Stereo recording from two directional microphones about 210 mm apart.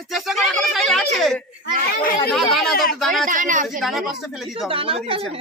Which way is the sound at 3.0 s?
Centre (ahead or behind).